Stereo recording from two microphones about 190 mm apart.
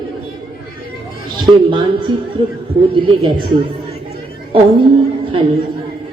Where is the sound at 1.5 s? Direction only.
25° right (ahead or behind).